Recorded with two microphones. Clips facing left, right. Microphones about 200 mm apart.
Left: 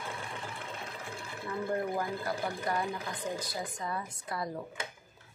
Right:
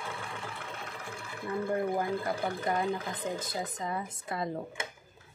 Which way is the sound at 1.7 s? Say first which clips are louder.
Right 3 dB; 20° right (ahead or behind).